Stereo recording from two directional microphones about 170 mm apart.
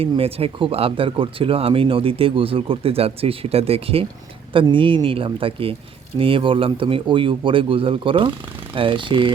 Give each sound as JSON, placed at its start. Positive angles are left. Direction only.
{"t": 0.0, "sound": "speech", "side_deg": -35}